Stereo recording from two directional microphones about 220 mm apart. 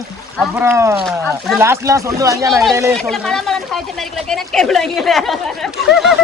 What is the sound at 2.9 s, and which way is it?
Speech, centre (ahead or behind).